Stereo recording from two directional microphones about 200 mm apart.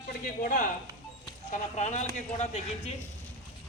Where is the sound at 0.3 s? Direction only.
45° left (ahead or behind).